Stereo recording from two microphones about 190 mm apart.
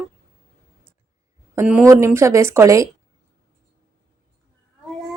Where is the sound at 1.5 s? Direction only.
10° right (ahead or behind).